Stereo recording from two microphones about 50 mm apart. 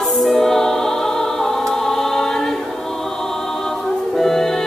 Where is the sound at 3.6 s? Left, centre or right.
Centre.